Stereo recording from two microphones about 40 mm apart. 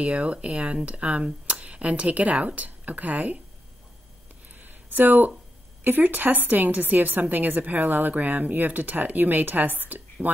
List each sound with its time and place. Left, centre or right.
0.0 s speech: right
4.6 s a sound: right
5.9 s a woman's voice: right